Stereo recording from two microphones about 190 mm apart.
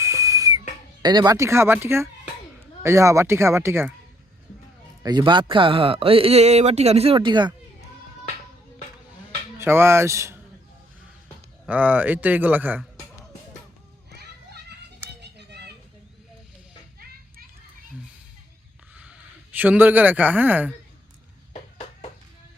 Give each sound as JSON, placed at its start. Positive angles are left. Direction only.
{"t": 0.0, "sound": "whistle", "side_deg": -15}
{"t": 1.0, "sound": "speech", "side_deg": -20}
{"t": 5.0, "sound": "speech", "side_deg": -25}
{"t": 9.6, "sound": "speech", "side_deg": -15}
{"t": 11.6, "sound": "speech", "side_deg": -10}
{"t": 14.2, "sound": "children playing", "side_deg": -60}
{"t": 18.9, "sound": "speech", "side_deg": -5}